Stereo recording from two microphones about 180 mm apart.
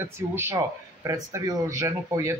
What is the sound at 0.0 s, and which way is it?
Speech, 10° right (ahead or behind).